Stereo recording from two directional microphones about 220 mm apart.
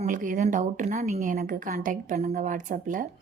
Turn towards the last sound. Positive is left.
turn(degrees=-35)  # may be behind; listen again after turning